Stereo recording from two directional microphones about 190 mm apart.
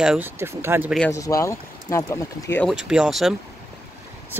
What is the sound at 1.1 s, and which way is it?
Speech, 15° left (ahead or behind).